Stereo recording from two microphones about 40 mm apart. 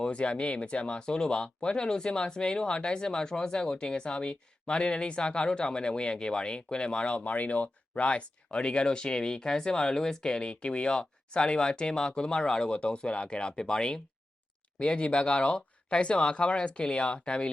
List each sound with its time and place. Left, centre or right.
0.0 s speech: left
7.3 s speech: left